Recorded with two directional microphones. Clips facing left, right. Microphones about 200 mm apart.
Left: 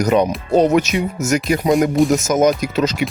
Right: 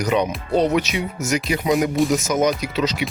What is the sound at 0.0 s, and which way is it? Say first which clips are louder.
Speech: left 5 dB; 45° left (ahead or behind).